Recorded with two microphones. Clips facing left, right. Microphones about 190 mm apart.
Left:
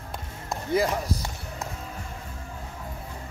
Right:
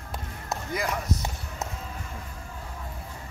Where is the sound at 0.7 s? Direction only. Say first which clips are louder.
Left 6 dB; 30° left (ahead or behind).